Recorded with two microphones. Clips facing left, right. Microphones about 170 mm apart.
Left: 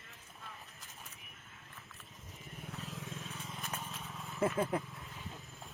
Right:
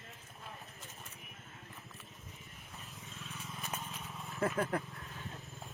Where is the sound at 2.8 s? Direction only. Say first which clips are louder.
Left 7 dB; 90° left.